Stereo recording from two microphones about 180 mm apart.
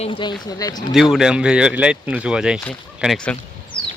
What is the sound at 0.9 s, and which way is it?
Speech, centre (ahead or behind).